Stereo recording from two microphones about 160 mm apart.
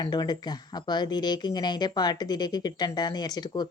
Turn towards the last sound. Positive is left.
turn(degrees=25)  # may be behind; listen again after turning